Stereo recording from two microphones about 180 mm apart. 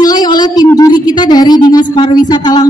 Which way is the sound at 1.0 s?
25° left (ahead or behind).